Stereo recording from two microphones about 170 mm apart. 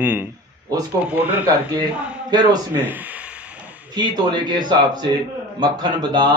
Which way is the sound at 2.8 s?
10° right (ahead or behind).